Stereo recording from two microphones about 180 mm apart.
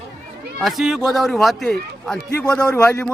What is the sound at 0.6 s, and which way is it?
A man's voice, centre (ahead or behind).